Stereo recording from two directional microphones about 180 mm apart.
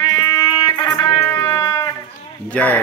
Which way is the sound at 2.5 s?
10° left (ahead or behind).